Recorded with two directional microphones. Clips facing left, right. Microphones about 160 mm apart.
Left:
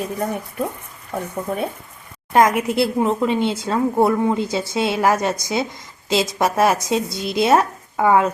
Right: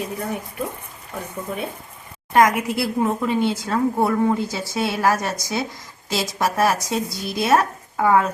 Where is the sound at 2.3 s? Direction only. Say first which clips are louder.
Left 1 dB; 25° left (ahead or behind).